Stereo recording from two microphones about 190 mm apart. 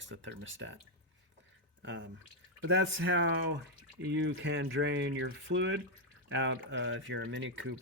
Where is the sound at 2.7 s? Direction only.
75° right (ahead or behind).